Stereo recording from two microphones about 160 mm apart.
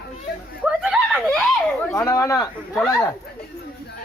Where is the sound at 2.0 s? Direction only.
20° left (ahead or behind).